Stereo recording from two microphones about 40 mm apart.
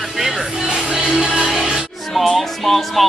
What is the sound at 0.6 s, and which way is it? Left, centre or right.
Music, centre.